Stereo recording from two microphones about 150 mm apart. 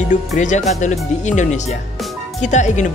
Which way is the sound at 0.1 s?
55° left (ahead or behind).